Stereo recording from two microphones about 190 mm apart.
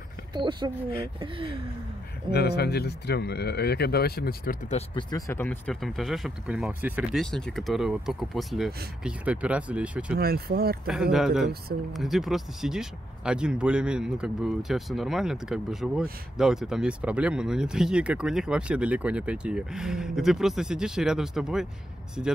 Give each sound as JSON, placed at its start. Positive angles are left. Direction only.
{"t": 0.3, "sound": "speech", "side_deg": -25}
{"t": 2.3, "sound": "speech", "side_deg": 60}
{"t": 4.6, "sound": "speech", "side_deg": 35}
{"t": 5.1, "sound": "speech", "side_deg": 15}
{"t": 10.1, "sound": "speech", "side_deg": -55}
{"t": 10.9, "sound": "speech", "side_deg": -5}